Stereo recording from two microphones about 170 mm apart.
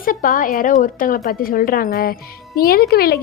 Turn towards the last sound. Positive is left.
turn(degrees=65)  # may be behind; listen again after turning